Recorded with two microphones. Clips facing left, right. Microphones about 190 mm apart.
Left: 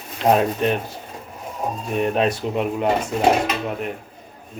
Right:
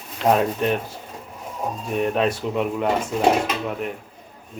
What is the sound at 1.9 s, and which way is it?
Speech, 20° left (ahead or behind).